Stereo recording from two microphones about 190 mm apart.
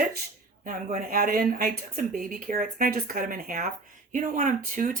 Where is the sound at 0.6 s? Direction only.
45° right (ahead or behind).